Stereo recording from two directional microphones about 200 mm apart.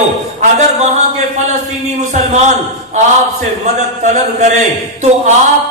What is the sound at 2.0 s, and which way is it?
Speech, 35° right (ahead or behind).